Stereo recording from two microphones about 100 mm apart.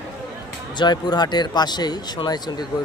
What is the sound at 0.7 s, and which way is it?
Speech, 50° left (ahead or behind).